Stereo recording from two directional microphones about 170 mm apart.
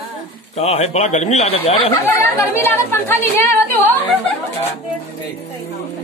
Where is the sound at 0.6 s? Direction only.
40° left (ahead or behind).